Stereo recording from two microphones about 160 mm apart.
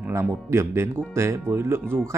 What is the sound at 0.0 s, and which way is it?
Speech, 10° right (ahead or behind).